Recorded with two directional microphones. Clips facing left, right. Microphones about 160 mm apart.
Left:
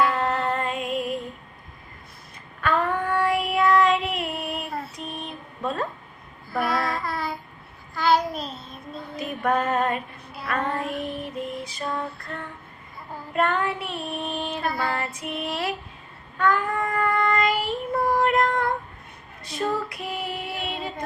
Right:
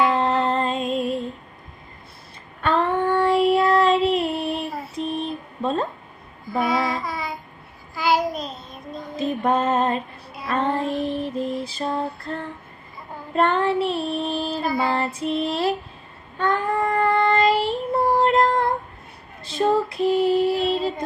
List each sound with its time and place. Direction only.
0.1 s music: 30° right (ahead or behind)
2.6 s child singing: 25° right (ahead or behind)
4.9 s a sound: 30° right (ahead or behind)
6.6 s child singing: centre (ahead or behind)
9.1 s music: 25° right (ahead or behind)
10.4 s child singing: 25° right (ahead or behind)
11.6 s female singing: 30° right (ahead or behind)
13.3 s child singing: 30° right (ahead or behind)
14.8 s female singing: 25° right (ahead or behind)
16.4 s child singing: 25° right (ahead or behind)
19.5 s female singing: 25° right (ahead or behind)